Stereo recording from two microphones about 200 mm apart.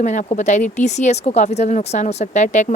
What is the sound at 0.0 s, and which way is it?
Speech, 35° left (ahead or behind).